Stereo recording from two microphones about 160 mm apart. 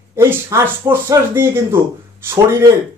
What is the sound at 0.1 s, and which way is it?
Speech, 15° right (ahead or behind).